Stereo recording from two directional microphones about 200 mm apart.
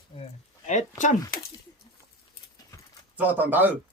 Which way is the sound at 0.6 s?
40° left (ahead or behind).